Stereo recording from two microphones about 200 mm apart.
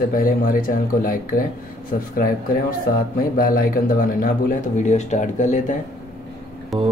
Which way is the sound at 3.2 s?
45° left (ahead or behind).